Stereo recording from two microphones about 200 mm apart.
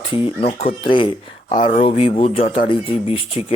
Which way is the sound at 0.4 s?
30° left (ahead or behind).